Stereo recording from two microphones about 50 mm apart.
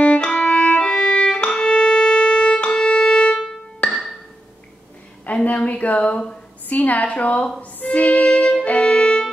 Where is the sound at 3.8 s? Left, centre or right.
Left.